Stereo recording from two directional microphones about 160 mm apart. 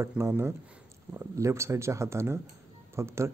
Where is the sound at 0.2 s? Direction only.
15° right (ahead or behind).